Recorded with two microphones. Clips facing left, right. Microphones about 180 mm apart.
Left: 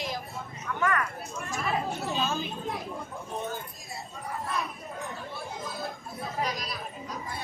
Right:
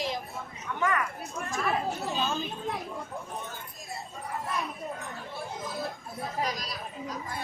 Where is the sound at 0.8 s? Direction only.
15° right (ahead or behind).